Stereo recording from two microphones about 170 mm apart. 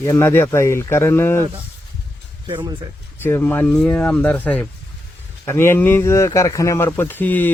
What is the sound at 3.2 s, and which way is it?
Speech, 10° left (ahead or behind).